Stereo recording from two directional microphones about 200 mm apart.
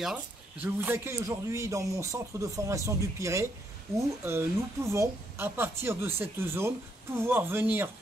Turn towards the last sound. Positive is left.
turn(degrees=-10)  # may be behind; listen again after turning